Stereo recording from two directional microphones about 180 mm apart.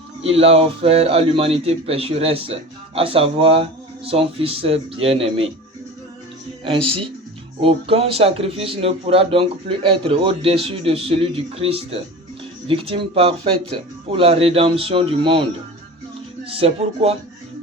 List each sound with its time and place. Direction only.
0.2 s a man's voice: 35° right (ahead or behind)
6.7 s a man's voice: 30° right (ahead or behind)
16.5 s a man's voice: 35° right (ahead or behind)